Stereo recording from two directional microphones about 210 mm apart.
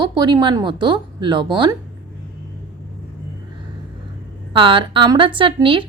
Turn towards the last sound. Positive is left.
turn(degrees=-25)  # may be behind; listen again after turning